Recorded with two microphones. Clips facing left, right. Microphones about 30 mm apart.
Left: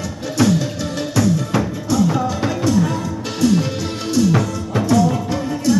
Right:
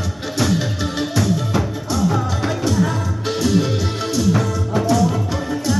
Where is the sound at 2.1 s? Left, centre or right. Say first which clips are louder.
Left 1 dB; centre.